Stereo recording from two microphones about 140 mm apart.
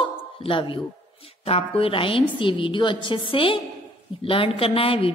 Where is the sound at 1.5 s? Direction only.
45° left (ahead or behind).